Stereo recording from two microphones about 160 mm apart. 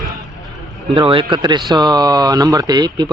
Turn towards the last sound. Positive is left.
turn(degrees=-25)  # may be behind; listen again after turning